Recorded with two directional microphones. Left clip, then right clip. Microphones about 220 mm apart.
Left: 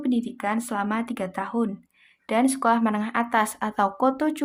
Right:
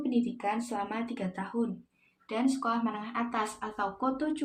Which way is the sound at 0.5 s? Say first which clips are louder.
Left 7 dB; 40° left (ahead or behind).